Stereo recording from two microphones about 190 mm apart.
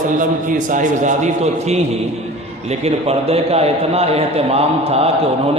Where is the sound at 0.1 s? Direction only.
45° right (ahead or behind).